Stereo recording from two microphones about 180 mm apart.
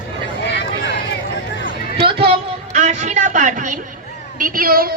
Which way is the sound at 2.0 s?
30° right (ahead or behind).